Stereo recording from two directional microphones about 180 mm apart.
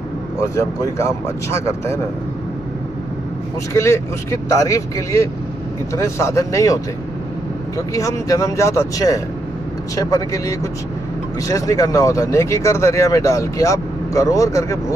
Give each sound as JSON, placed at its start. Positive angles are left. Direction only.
{"t": 0.4, "sound": "speech", "side_deg": 15}
{"t": 3.7, "sound": "speech", "side_deg": 15}